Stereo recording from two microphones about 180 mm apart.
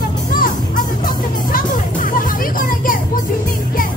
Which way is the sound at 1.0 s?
50° left (ahead or behind).